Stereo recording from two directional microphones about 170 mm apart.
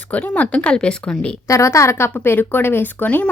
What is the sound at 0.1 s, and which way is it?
Speech, 10° left (ahead or behind).